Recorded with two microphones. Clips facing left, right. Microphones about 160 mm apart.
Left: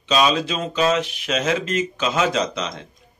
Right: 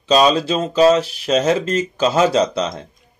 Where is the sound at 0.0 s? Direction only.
35° right (ahead or behind).